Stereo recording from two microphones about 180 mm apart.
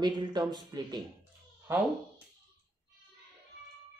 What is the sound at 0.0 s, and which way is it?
Speech, 25° right (ahead or behind).